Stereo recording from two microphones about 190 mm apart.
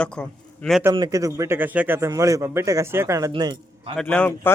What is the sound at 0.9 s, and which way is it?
Speech, 20° right (ahead or behind).